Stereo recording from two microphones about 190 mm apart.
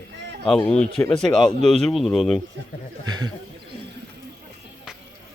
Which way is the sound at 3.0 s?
20° right (ahead or behind).